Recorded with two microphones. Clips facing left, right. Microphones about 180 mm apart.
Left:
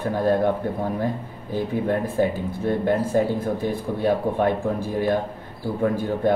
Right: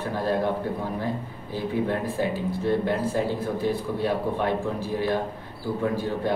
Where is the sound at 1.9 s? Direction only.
50° left (ahead or behind).